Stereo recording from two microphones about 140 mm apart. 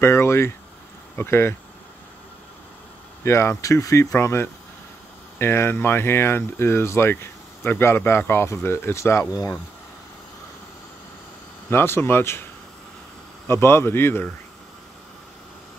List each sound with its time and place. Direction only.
0.0 s speech: 20° left (ahead or behind)
3.3 s speech: 20° left (ahead or behind)
11.7 s speech: 15° left (ahead or behind)
13.5 s speech: 15° left (ahead or behind)